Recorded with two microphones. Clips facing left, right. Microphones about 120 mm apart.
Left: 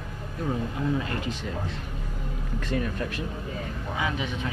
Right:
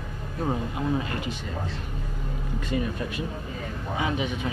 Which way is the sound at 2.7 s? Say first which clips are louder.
Even; 5° right (ahead or behind).